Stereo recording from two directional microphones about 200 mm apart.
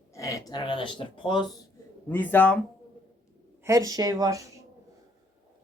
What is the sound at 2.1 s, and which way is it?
Speech, 10° left (ahead or behind).